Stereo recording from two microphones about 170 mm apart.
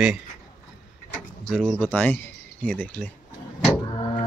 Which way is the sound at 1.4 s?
5° left (ahead or behind).